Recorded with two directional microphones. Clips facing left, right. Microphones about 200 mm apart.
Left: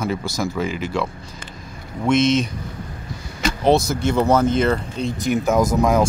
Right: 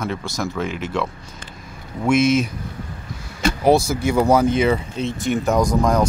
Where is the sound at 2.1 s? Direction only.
10° right (ahead or behind).